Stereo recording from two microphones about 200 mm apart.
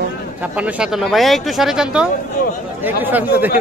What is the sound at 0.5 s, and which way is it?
A man's voice, 5° right (ahead or behind).